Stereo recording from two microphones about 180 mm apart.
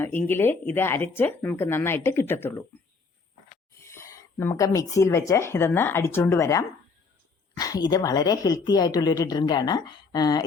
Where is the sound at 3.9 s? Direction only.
15° left (ahead or behind).